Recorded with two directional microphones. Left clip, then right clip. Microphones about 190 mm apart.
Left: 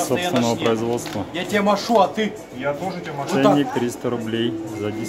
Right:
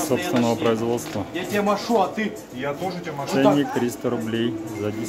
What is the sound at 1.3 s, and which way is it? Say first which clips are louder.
Speech: left 3 dB; 45° left (ahead or behind).